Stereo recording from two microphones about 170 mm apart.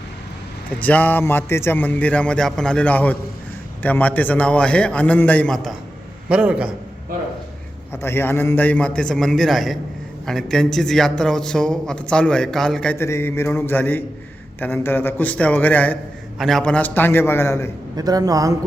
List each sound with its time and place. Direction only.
0.8 s a man's voice: 10° left (ahead or behind)
6.2 s a man's voice: 5° right (ahead or behind)
8.0 s a man's voice: 15° left (ahead or behind)
17.9 s a man's voice: 20° right (ahead or behind)